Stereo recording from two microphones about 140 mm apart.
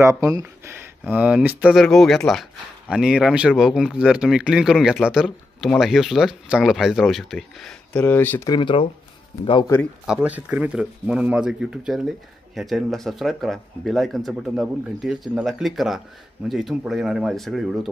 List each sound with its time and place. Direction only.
0.0 s speech: 20° right (ahead or behind); by 8.5 s 15° left (ahead or behind)
8.5 s speech: 35° left (ahead or behind)
10.0 s speech: 10° right (ahead or behind)